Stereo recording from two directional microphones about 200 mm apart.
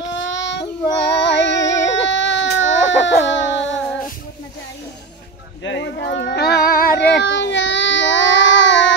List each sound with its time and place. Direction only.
0.1 s child singing: 65° left (ahead or behind)
1.7 s baby cry: 65° left (ahead or behind)
3.3 s a sound: 65° left (ahead or behind)
5.6 s child singing: 65° left (ahead or behind)